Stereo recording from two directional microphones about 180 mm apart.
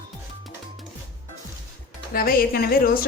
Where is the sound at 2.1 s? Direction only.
55° left (ahead or behind).